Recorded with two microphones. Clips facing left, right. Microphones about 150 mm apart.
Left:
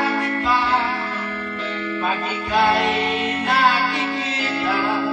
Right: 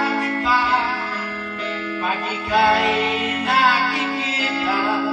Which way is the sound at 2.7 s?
10° right (ahead or behind).